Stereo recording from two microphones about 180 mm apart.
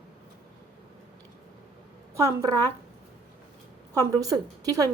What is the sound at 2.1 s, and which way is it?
Speech, 15° right (ahead or behind).